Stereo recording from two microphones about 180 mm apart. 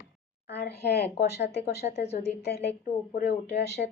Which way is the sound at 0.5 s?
65° left (ahead or behind).